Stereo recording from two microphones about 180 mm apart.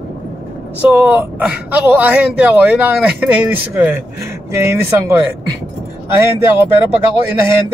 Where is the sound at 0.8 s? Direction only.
10° right (ahead or behind).